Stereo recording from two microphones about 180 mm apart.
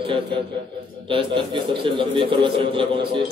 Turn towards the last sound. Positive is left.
turn(degrees=-30)  # may be behind; listen again after turning